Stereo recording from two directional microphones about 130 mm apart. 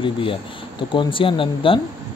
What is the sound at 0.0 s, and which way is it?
A man's voice, 40° left (ahead or behind).